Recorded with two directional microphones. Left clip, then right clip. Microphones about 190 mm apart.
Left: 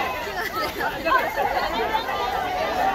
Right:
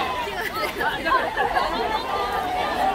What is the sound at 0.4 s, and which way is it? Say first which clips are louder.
Chatter: even; 20° left (ahead or behind).